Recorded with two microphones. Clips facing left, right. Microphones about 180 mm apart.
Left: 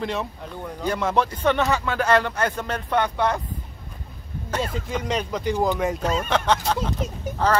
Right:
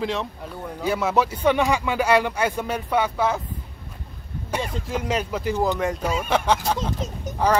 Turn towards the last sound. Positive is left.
turn(degrees=-10)  # may be behind; listen again after turning